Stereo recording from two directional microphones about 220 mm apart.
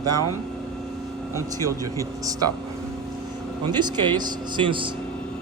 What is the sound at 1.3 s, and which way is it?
Speech, 15° left (ahead or behind).